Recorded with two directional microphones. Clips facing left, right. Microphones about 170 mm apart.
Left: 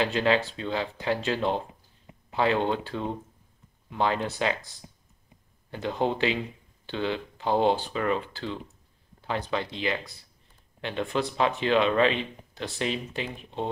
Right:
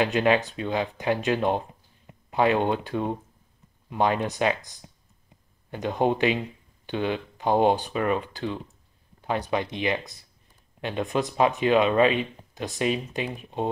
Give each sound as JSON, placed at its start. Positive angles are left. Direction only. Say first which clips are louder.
{"t": 0.0, "sound": "speech", "louder": "right 2 dB", "side_deg": -15}